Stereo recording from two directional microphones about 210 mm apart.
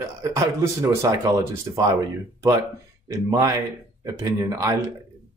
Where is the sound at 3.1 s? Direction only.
15° right (ahead or behind).